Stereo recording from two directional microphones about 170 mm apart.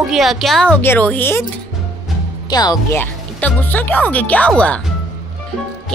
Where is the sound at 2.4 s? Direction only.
25° left (ahead or behind); by 4.8 s 5° left (ahead or behind).